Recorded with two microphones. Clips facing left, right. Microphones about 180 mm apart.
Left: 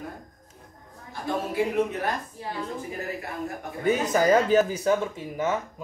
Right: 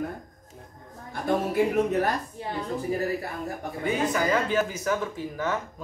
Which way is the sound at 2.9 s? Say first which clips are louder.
Right 6 dB; 35° right (ahead or behind).